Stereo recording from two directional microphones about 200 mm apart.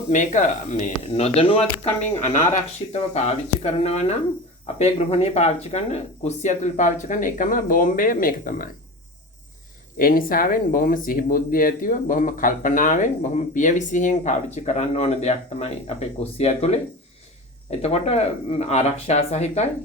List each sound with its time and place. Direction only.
0.1 s speech: 40° left (ahead or behind)
10.0 s speech: 45° left (ahead or behind)